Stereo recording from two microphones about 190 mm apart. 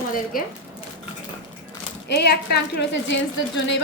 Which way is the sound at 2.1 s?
60° left (ahead or behind).